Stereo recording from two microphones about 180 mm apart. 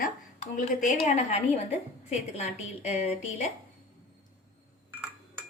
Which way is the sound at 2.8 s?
40° left (ahead or behind).